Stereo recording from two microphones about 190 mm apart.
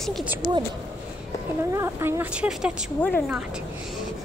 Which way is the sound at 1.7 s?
15° right (ahead or behind).